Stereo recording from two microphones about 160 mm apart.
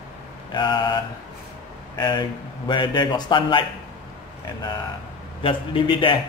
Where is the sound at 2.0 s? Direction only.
30° left (ahead or behind).